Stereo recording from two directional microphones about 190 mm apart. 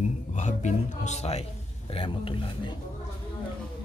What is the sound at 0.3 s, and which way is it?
Speech, 40° left (ahead or behind).